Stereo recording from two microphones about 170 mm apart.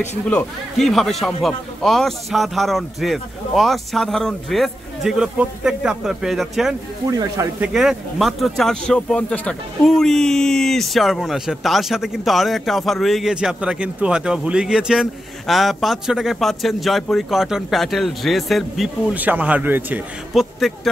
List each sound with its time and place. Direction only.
0.3 s speech: 5° left (ahead or behind)
7.1 s speech: 20° right (ahead or behind)
7.6 s speech: 5° right (ahead or behind)